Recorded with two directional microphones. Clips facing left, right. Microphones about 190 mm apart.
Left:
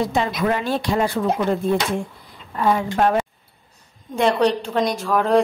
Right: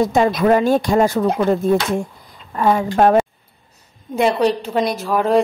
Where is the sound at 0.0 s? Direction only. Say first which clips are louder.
Right 6 dB; 45° right (ahead or behind).